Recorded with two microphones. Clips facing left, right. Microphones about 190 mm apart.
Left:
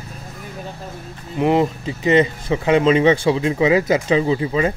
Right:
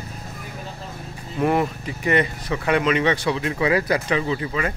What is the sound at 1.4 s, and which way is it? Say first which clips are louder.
Speech: left 4 dB; 20° left (ahead or behind).